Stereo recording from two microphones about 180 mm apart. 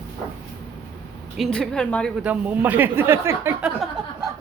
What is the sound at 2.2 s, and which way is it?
Speech, 10° right (ahead or behind).